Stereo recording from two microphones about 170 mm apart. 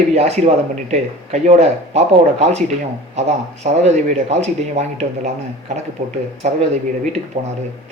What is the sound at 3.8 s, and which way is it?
Speech, 40° right (ahead or behind).